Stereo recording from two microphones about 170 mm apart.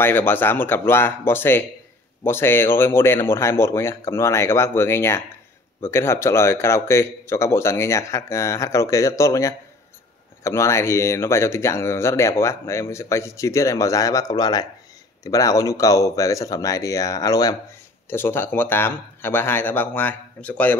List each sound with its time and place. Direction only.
0.0 s speech: 10° left (ahead or behind)